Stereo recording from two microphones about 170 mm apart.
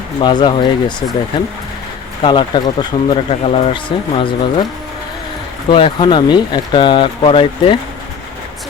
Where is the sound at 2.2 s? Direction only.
30° left (ahead or behind).